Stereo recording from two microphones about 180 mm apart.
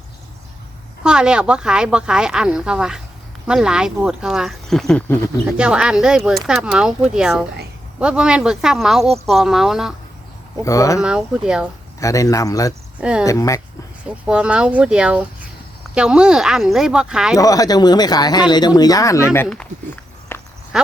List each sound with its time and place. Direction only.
1.0 s speech: 5° right (ahead or behind)
5.5 s speech: 5° right (ahead or behind)
10.6 s speech: 20° left (ahead or behind)
11.0 s speech: 5° right (ahead or behind)
11.9 s speech: 20° left (ahead or behind)
13.0 s speech: 5° right (ahead or behind)
13.2 s speech: 15° left (ahead or behind)
14.3 s speech: 5° right (ahead or behind)
17.3 s speech: 20° left (ahead or behind)
20.3 s walk: 10° left (ahead or behind)
20.7 s speech: centre (ahead or behind)